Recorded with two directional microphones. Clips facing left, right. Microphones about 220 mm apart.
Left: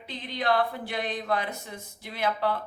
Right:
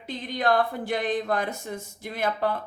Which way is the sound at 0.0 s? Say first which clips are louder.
Right 4 dB; 45° right (ahead or behind).